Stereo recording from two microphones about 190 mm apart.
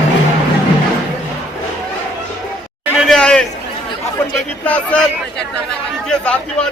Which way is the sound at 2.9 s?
Centre (ahead or behind).